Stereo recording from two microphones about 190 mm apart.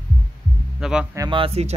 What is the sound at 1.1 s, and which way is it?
Speech, 20° right (ahead or behind).